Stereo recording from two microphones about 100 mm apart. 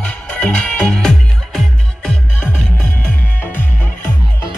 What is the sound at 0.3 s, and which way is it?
Music, 15° left (ahead or behind).